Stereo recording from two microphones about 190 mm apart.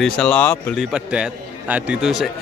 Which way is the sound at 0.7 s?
5° right (ahead or behind).